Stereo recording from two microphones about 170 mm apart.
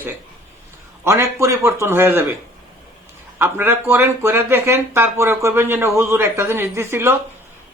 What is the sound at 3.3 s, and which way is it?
Speech, 15° right (ahead or behind).